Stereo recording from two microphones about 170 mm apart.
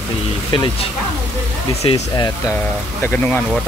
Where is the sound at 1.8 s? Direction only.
40° left (ahead or behind).